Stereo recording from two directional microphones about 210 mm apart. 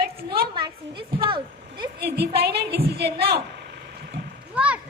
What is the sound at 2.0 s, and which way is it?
A woman's voice, 50° right (ahead or behind).